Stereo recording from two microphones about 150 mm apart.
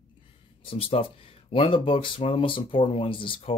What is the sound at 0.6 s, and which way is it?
Speech, 40° left (ahead or behind).